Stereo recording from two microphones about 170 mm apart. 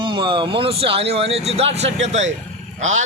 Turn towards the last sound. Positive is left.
turn(degrees=-45)  # may be behind; listen again after turning